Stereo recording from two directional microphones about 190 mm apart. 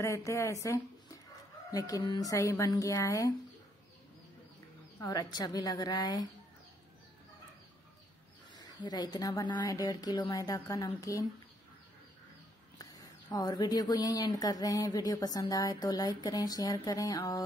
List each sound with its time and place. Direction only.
0.0 s a woman's voice: 15° left (ahead or behind)
5.0 s a woman's voice: 20° left (ahead or behind)
8.5 s a woman's voice: 20° left (ahead or behind)
12.7 s a woman's voice: 20° left (ahead or behind)